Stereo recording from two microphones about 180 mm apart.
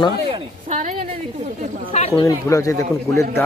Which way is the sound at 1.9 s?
35° left (ahead or behind).